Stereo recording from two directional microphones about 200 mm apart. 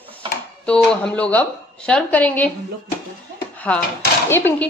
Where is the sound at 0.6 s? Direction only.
5° left (ahead or behind).